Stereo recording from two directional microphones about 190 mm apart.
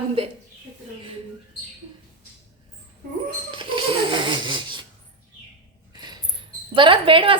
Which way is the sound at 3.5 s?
25° right (ahead or behind).